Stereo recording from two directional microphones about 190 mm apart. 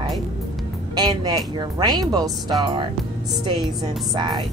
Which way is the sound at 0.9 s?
20° right (ahead or behind).